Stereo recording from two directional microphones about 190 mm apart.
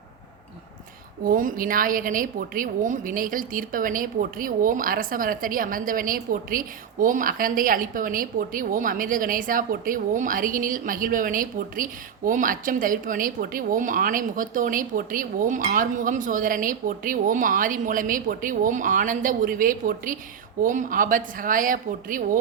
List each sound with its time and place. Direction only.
1.2 s a woman's voice: 50° right (ahead or behind)